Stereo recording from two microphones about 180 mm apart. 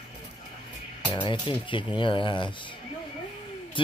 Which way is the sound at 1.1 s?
25° left (ahead or behind).